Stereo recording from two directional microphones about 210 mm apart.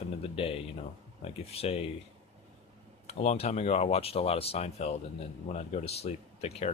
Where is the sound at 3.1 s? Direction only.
30° left (ahead or behind).